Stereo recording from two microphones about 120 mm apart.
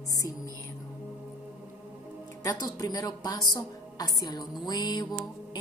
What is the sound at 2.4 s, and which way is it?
A woman's voice, 30° left (ahead or behind).